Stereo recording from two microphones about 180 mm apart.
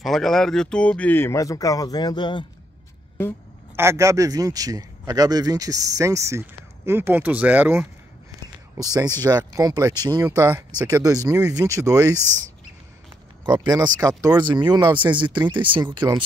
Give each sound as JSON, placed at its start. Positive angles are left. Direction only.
{"t": 0.0, "sound": "speech", "side_deg": 0}
{"t": 3.7, "sound": "speech", "side_deg": -15}
{"t": 8.7, "sound": "speech", "side_deg": -20}
{"t": 13.5, "sound": "speech", "side_deg": -20}